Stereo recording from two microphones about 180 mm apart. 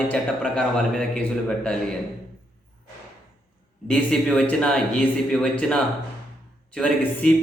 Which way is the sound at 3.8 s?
5° left (ahead or behind).